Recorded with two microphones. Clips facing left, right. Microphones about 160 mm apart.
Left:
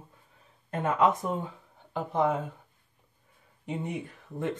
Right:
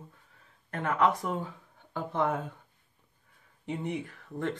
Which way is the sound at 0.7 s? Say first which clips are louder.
Left 2 dB; 20° left (ahead or behind).